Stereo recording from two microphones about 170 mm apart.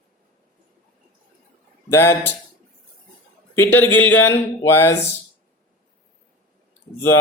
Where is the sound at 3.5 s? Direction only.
15° left (ahead or behind).